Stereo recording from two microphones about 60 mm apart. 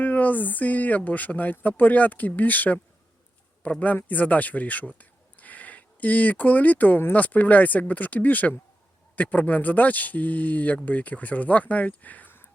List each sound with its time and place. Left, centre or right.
0.0 s speech: left